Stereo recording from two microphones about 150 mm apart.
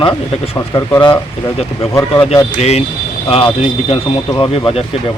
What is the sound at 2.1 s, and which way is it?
A man's voice, 40° left (ahead or behind).